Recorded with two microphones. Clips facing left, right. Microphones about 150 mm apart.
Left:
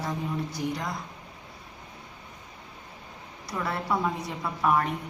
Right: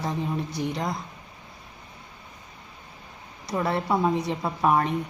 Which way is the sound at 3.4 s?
25° right (ahead or behind).